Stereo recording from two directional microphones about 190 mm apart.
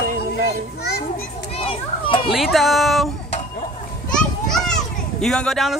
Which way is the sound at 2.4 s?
Centre (ahead or behind).